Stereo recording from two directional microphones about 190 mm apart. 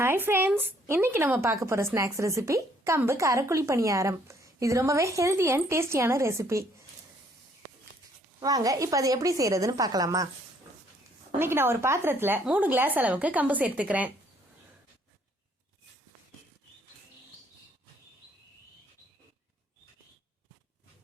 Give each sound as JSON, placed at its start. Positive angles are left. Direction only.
{"t": 0.0, "sound": "speech", "side_deg": -10}
{"t": 8.4, "sound": "speech", "side_deg": -20}
{"t": 11.3, "sound": "speech", "side_deg": -10}